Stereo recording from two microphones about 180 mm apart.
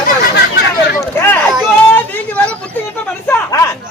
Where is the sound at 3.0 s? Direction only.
15° left (ahead or behind).